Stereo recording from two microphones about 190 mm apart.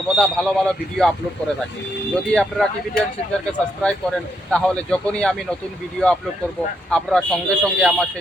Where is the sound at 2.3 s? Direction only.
5° left (ahead or behind).